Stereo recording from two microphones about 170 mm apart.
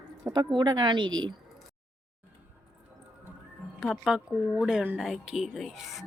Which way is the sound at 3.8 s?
5° right (ahead or behind).